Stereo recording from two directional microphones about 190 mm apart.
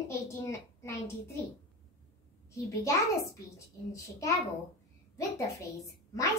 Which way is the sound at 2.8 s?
15° left (ahead or behind).